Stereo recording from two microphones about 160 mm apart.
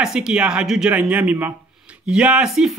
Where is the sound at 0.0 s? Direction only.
5° right (ahead or behind).